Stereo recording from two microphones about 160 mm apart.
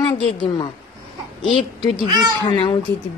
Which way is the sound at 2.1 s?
25° right (ahead or behind).